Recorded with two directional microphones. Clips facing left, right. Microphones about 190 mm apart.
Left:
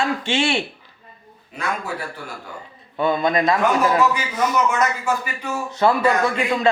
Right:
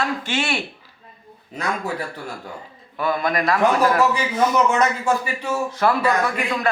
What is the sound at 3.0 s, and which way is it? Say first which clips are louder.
A man's voice: left 3 dB; 25° left (ahead or behind).